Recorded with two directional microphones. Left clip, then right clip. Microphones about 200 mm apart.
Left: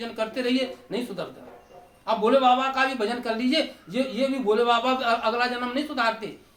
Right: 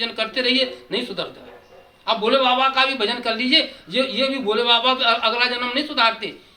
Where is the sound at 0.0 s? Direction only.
20° left (ahead or behind).